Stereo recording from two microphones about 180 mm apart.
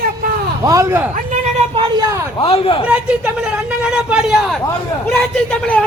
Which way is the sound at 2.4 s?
30° left (ahead or behind).